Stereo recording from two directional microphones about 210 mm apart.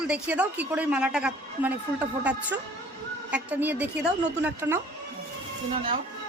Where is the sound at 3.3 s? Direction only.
10° right (ahead or behind).